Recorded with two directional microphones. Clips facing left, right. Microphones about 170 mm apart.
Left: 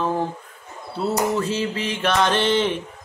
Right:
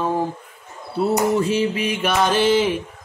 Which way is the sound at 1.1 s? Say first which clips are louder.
Right 3 dB; 15° right (ahead or behind).